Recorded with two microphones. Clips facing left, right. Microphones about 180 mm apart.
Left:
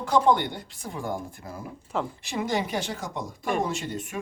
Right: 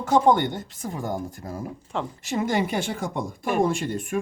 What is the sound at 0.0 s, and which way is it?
Speech, 45° right (ahead or behind).